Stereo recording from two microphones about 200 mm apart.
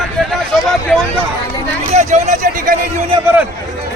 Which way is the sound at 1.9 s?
35° right (ahead or behind).